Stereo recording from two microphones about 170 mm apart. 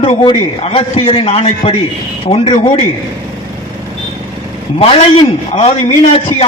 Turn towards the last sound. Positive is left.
turn(degrees=35)  # may be behind; listen again after turning